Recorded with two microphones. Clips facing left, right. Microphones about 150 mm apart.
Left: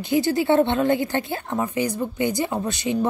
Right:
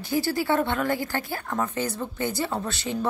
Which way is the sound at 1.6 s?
10° left (ahead or behind).